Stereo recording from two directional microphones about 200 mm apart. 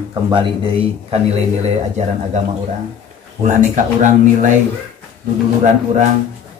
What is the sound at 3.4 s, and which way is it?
Speech, 40° right (ahead or behind).